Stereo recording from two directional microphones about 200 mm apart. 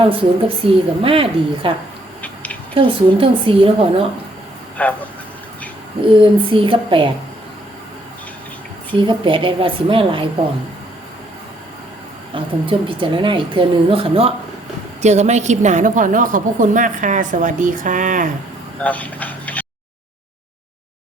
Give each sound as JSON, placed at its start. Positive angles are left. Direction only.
{"t": 0.0, "sound": "a woman's voice", "side_deg": -30}
{"t": 2.2, "sound": "a sound", "side_deg": 5}
{"t": 2.7, "sound": "a woman's voice", "side_deg": -25}
{"t": 4.8, "sound": "speech", "side_deg": 5}
{"t": 6.0, "sound": "a woman's voice", "side_deg": -25}
{"t": 9.0, "sound": "a woman's voice", "side_deg": -25}
{"t": 12.3, "sound": "a woman's voice", "side_deg": -25}
{"t": 18.8, "sound": "speech", "side_deg": 5}